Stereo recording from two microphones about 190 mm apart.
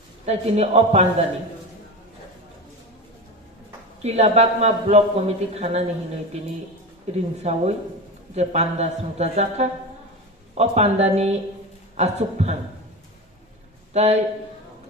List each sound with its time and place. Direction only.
0.3 s a man's voice: 35° right (ahead or behind)
4.0 s a man's voice: 35° right (ahead or behind)
7.4 s a man's voice: 35° right (ahead or behind)
13.9 s a man's voice: 35° right (ahead or behind)